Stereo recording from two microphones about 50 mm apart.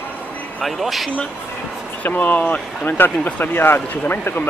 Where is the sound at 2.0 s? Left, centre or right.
Left.